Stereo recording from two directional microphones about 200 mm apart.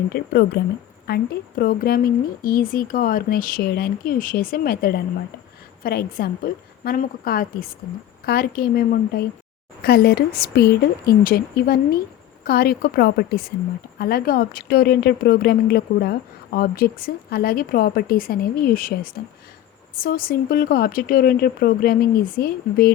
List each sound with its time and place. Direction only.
0.1 s speech: 50° left (ahead or behind)